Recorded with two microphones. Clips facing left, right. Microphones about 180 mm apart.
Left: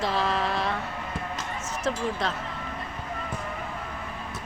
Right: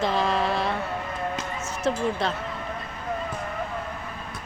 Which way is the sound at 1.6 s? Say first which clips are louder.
Right 3 dB; 30° right (ahead or behind).